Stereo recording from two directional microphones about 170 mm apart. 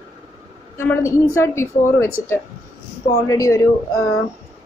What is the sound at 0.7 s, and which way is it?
A woman's voice, 15° left (ahead or behind).